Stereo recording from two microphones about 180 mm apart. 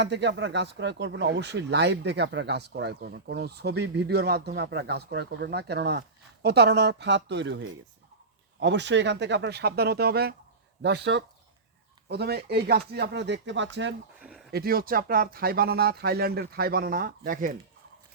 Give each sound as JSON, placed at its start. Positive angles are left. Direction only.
{"t": 0.0, "sound": "speech", "side_deg": -75}
{"t": 14.2, "sound": "a sound", "side_deg": -5}
{"t": 14.5, "sound": "speech", "side_deg": -55}